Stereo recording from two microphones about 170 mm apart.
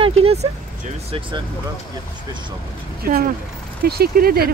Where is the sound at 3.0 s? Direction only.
60° right (ahead or behind).